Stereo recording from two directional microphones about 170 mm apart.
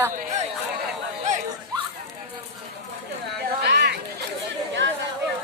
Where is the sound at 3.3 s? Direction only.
75° right (ahead or behind).